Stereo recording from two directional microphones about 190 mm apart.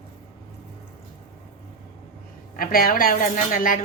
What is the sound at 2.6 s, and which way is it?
A woman's voice, 50° left (ahead or behind).